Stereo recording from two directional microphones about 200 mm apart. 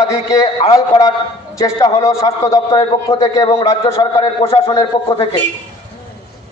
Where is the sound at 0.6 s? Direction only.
20° left (ahead or behind).